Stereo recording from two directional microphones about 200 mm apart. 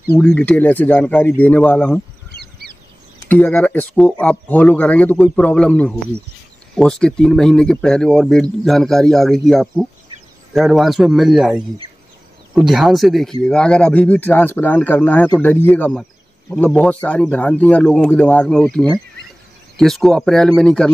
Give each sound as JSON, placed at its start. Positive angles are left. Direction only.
{"t": 0.1, "sound": "speech", "side_deg": 5}
{"t": 3.3, "sound": "a man's voice", "side_deg": 10}